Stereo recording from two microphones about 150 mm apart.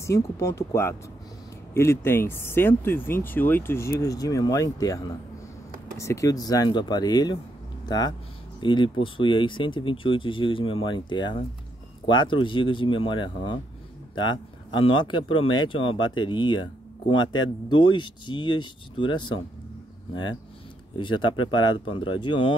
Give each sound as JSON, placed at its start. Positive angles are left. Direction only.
{"t": 0.0, "sound": "speech", "side_deg": 20}
{"t": 7.8, "sound": "a sound", "side_deg": 25}
{"t": 8.5, "sound": "speech", "side_deg": 30}
{"t": 21.0, "sound": "speech", "side_deg": 30}